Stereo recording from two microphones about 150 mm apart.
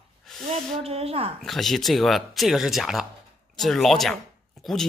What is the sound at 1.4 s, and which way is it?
Speech, centre (ahead or behind).